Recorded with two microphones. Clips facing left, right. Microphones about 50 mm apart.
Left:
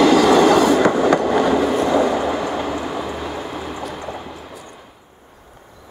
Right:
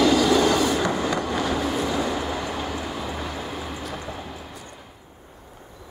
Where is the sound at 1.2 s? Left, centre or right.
Left.